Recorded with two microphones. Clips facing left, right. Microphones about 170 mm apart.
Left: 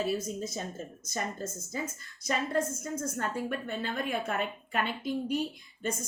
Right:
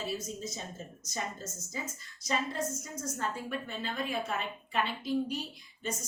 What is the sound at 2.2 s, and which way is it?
A woman's voice, 55° left (ahead or behind).